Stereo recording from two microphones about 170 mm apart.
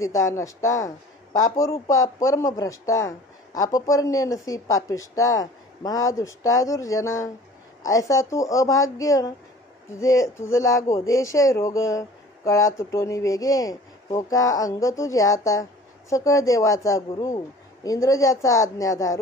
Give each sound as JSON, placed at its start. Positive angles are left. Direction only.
{"t": 0.0, "sound": "speech", "side_deg": 20}